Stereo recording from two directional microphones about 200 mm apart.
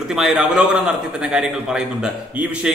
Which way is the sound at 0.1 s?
5° right (ahead or behind).